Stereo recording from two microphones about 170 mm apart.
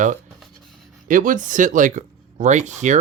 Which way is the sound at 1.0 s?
50° right (ahead or behind).